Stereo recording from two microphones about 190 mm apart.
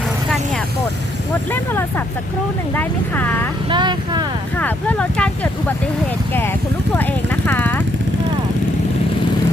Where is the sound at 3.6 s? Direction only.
25° right (ahead or behind).